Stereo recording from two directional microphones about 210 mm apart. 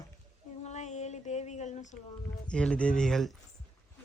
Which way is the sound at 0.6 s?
35° left (ahead or behind).